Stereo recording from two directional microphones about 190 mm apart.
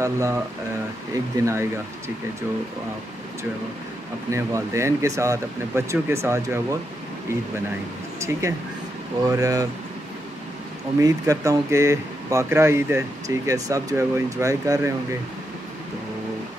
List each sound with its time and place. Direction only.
0.0 s speech: 15° right (ahead or behind)
4.3 s speech: 15° right (ahead or behind)
8.2 s speech: 15° right (ahead or behind)
11.0 s speech: 15° right (ahead or behind)